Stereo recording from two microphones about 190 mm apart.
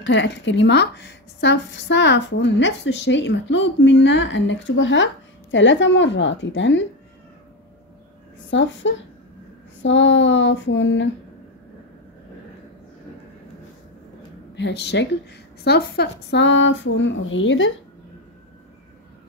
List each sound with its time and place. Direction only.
0.0 s a woman's voice: 70° left (ahead or behind)
8.5 s a woman's voice: 75° left (ahead or behind)
14.5 s a woman's voice: 65° left (ahead or behind)